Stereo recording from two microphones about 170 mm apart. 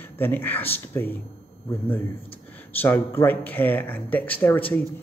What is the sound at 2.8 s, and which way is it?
Speech, 15° left (ahead or behind).